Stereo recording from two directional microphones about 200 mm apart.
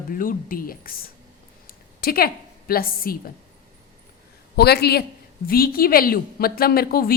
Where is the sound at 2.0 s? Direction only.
50° left (ahead or behind).